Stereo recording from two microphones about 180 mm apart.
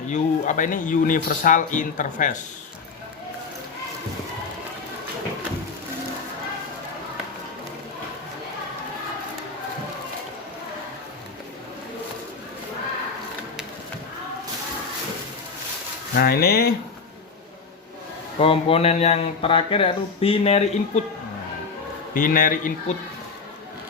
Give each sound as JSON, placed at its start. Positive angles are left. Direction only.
{"t": 0.1, "sound": "speech", "side_deg": 45}
{"t": 16.1, "sound": "speech", "side_deg": 60}
{"t": 18.3, "sound": "speech", "side_deg": 30}
{"t": 22.1, "sound": "speech", "side_deg": 50}